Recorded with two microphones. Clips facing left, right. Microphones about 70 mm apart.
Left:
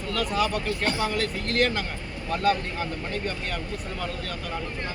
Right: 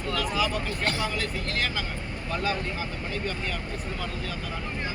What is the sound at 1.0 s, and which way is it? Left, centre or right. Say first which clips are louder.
Speech: left 3 dB; left.